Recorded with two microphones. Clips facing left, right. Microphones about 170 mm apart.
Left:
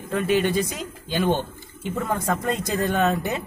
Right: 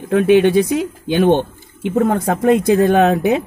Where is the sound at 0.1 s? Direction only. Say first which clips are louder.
Right 10 dB; 70° right (ahead or behind).